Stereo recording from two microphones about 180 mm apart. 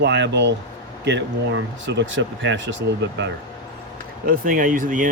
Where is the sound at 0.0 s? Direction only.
75° right (ahead or behind).